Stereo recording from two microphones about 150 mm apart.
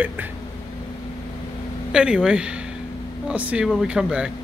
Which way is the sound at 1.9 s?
5° right (ahead or behind).